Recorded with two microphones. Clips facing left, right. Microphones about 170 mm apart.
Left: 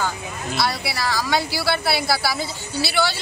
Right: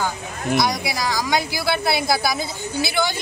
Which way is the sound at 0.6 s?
15° right (ahead or behind).